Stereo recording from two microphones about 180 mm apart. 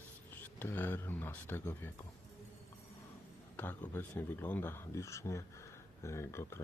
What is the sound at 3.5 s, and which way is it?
Speech, 10° left (ahead or behind).